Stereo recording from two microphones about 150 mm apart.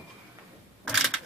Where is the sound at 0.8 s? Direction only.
Centre (ahead or behind).